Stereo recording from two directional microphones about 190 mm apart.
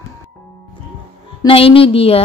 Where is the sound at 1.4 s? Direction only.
30° left (ahead or behind).